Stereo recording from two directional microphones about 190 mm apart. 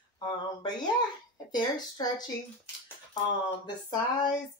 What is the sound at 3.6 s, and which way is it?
Speech, 20° left (ahead or behind).